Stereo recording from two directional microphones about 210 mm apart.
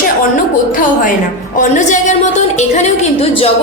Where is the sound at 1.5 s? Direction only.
35° left (ahead or behind).